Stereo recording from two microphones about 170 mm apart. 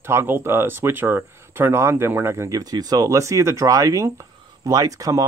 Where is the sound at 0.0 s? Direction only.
15° right (ahead or behind).